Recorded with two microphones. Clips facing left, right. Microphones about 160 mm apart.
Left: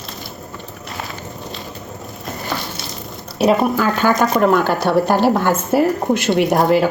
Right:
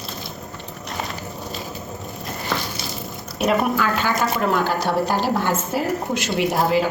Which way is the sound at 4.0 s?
45° left (ahead or behind).